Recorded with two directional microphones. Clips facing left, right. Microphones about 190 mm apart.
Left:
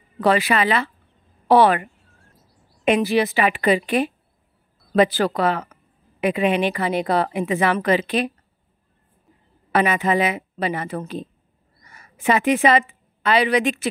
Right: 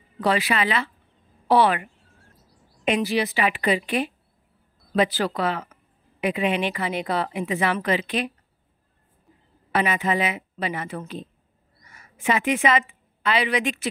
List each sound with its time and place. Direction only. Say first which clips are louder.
0.2 s a woman's voice: left 4 dB; 50° left (ahead or behind)
9.7 s a woman's voice: left 4 dB; 50° left (ahead or behind)